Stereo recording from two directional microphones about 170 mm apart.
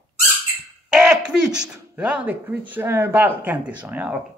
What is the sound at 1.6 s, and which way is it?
Speech, 5° right (ahead or behind).